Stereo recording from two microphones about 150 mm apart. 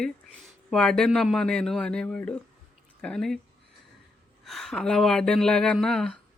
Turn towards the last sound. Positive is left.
turn(degrees=5)  # may be behind; listen again after turning